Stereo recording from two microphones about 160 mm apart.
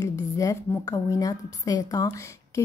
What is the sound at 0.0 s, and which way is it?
Speech, 20° left (ahead or behind).